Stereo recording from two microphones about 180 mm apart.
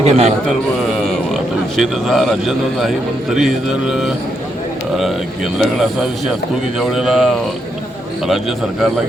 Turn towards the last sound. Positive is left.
turn(degrees=0)  # may be behind; listen again after turning